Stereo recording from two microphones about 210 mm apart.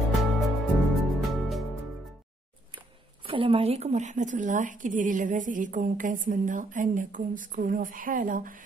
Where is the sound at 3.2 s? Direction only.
25° right (ahead or behind).